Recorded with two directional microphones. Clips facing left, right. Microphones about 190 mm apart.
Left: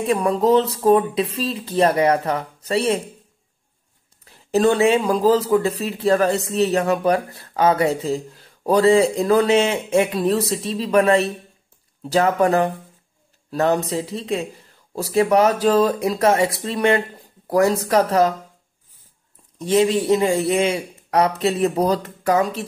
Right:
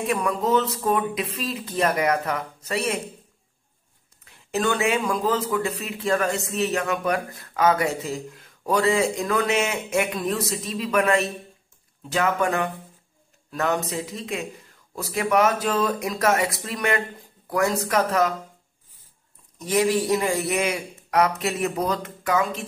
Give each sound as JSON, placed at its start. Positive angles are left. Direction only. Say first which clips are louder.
{"t": 0.0, "sound": "speech", "louder": "left 6 dB", "side_deg": 30}
{"t": 4.2, "sound": "speech", "louder": "left 8 dB", "side_deg": 35}
{"t": 19.6, "sound": "a man's voice", "louder": "left 4 dB", "side_deg": 25}